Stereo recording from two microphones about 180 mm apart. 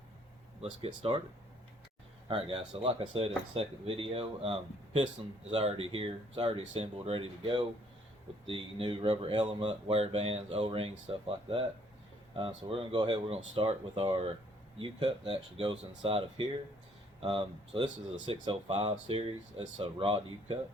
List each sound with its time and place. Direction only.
0.6 s speech: 35° right (ahead or behind)
2.2 s speech: 30° right (ahead or behind)
12.7 s speech: 25° right (ahead or behind)